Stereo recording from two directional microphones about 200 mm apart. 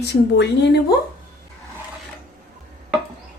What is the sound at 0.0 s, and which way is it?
Speech, 60° left (ahead or behind).